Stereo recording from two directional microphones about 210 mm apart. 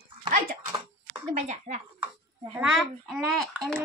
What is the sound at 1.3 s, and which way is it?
Speech, 35° right (ahead or behind).